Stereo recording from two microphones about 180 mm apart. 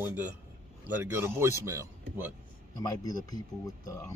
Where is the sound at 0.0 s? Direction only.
10° right (ahead or behind).